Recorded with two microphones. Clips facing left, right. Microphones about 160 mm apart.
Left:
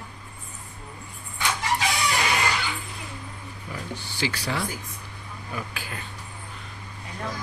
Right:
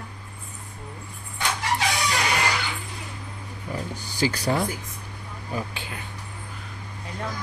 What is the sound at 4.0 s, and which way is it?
Speech, 40° right (ahead or behind).